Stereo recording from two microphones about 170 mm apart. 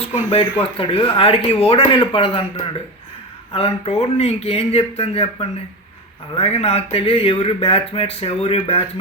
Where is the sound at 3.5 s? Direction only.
35° left (ahead or behind).